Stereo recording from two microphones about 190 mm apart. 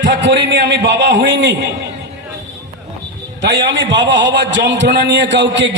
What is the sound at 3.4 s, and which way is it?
A man's voice, 70° right (ahead or behind).